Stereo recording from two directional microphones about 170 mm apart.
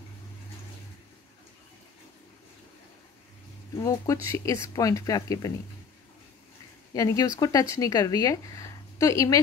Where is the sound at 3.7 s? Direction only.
20° left (ahead or behind).